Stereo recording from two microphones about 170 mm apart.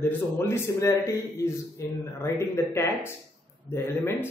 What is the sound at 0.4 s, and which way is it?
Speech, 15° left (ahead or behind).